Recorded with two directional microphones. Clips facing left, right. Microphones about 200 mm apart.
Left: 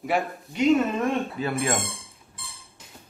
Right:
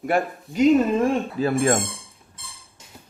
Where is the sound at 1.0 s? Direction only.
35° right (ahead or behind).